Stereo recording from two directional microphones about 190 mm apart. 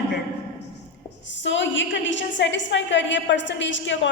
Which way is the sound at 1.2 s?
70° left (ahead or behind).